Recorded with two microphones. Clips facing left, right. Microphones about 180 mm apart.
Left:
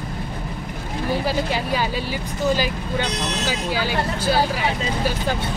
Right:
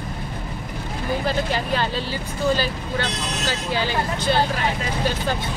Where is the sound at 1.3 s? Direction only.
10° left (ahead or behind).